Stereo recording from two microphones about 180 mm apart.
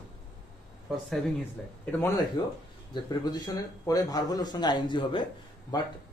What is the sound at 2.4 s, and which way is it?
A man's voice, 25° left (ahead or behind).